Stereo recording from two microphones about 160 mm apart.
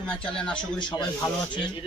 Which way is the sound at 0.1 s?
5° left (ahead or behind).